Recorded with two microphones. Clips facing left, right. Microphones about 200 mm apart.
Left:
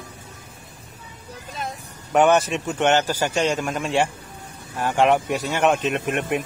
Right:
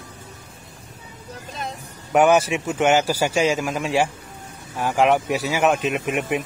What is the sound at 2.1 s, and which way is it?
A man's voice, 10° right (ahead or behind).